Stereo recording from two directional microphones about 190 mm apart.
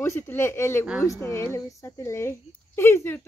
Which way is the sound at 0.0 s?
15° left (ahead or behind).